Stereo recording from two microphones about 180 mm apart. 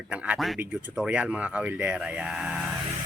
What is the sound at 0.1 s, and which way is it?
Speech, 5° right (ahead or behind).